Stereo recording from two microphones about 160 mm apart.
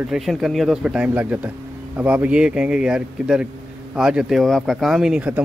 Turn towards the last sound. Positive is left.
turn(degrees=-5)  # may be behind; listen again after turning